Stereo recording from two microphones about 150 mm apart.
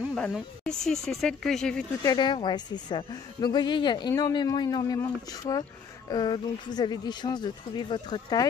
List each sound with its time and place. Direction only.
0.1 s speech: 5° left (ahead or behind)
2.0 s speech: 30° left (ahead or behind)